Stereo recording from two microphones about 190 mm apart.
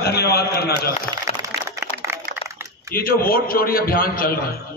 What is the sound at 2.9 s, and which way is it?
A man's voice, 50° left (ahead or behind).